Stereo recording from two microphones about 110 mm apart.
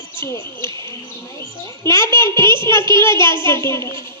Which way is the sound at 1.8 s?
25° left (ahead or behind).